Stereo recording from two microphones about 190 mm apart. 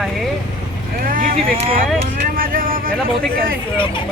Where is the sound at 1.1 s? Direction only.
45° right (ahead or behind).